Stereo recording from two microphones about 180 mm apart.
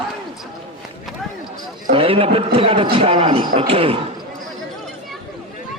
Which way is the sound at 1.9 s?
30° right (ahead or behind).